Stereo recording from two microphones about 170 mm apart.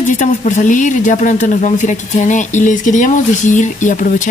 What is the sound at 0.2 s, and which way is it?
Speech, 45° left (ahead or behind).